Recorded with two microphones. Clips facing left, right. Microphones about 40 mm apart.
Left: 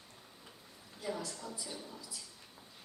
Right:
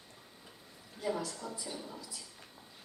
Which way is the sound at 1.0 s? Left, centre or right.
Centre.